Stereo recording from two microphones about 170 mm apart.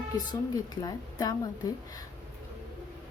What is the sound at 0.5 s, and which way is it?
A woman's voice, 20° left (ahead or behind).